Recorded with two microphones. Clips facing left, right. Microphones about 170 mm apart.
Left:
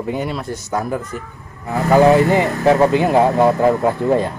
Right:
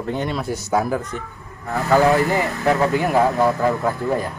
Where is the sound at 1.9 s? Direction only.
20° left (ahead or behind).